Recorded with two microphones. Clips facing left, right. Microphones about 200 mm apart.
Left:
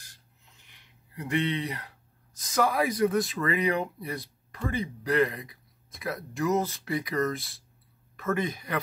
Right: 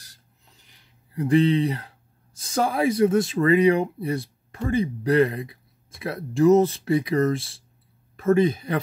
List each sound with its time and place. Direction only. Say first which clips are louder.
0.0 s speech: right 2 dB; 35° right (ahead or behind)